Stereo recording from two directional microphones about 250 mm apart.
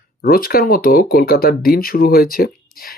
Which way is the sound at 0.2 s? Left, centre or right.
Left.